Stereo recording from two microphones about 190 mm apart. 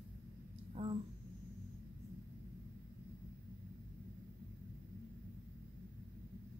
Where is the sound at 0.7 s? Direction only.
25° right (ahead or behind).